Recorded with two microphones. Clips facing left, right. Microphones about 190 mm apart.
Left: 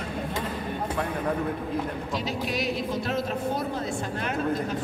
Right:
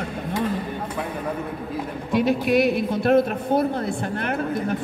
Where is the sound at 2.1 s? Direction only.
60° right (ahead or behind).